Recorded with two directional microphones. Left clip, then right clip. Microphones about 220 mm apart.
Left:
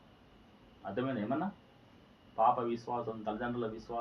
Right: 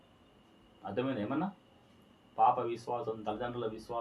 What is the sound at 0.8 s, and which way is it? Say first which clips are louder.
Speech: right 1 dB; 20° right (ahead or behind).